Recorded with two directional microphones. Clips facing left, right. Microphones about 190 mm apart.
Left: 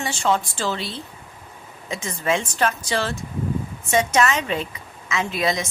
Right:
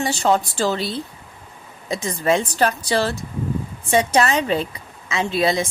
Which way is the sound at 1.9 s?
35° right (ahead or behind).